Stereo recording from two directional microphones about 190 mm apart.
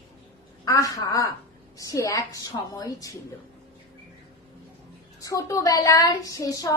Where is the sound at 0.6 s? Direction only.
20° left (ahead or behind).